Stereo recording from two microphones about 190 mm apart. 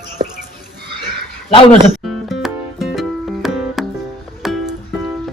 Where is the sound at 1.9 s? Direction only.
Centre (ahead or behind).